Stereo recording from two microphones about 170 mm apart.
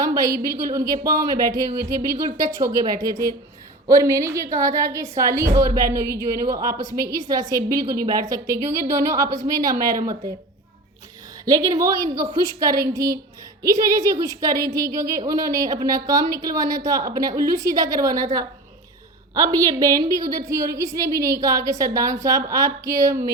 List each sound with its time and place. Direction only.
0.0 s a sound: 20° right (ahead or behind)
0.4 s a woman's voice: 20° right (ahead or behind)
11.4 s a woman's voice: 20° right (ahead or behind)
19.3 s a woman's voice: 20° right (ahead or behind)